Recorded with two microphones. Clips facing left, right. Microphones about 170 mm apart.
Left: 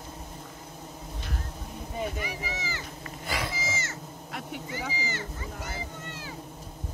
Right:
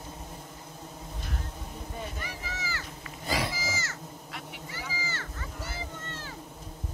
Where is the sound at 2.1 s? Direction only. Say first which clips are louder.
Left 4 dB; 15° left (ahead or behind).